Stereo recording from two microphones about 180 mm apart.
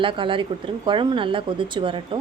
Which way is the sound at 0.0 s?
30° right (ahead or behind).